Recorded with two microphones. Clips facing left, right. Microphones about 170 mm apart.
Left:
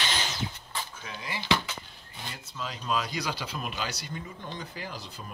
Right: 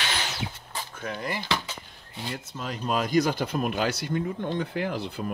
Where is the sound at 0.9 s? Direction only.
55° right (ahead or behind).